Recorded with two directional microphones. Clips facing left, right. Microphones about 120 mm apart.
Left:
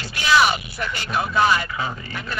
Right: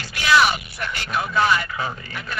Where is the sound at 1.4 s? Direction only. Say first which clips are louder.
Left 1 dB; 15° left (ahead or behind).